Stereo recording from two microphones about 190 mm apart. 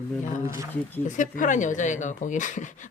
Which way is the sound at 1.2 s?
40° left (ahead or behind).